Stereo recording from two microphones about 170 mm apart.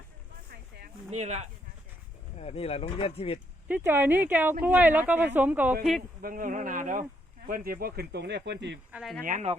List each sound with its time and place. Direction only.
1.1 s speech: 40° right (ahead or behind)
2.4 s speech: 40° left (ahead or behind)
3.7 s speech: 10° right (ahead or behind)
6.2 s speech: 55° right (ahead or behind); by 8.4 s 75° right (ahead or behind)
8.4 s speech: 90° right
8.9 s speech: centre (ahead or behind)
9.2 s speech: 50° right (ahead or behind)